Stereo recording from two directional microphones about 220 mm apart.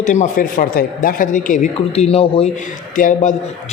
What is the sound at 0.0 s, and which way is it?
A man's voice, 35° left (ahead or behind).